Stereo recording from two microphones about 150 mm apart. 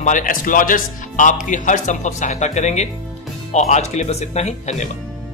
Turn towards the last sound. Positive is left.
turn(degrees=50)  # may be behind; listen again after turning